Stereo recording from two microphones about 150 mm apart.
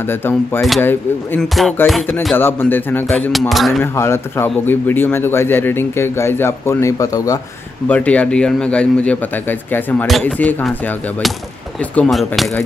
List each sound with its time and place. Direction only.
0.0 s speech: 15° left (ahead or behind)
0.6 s speech: centre (ahead or behind)
0.8 s speech: 10° left (ahead or behind)
1.5 s speech: centre (ahead or behind)
2.3 s speech: 15° left (ahead or behind)
3.1 s speech: centre (ahead or behind)
3.8 s speech: 15° left (ahead or behind)
7.9 s speech: 10° left (ahead or behind)
11.9 s speech: 5° left (ahead or behind)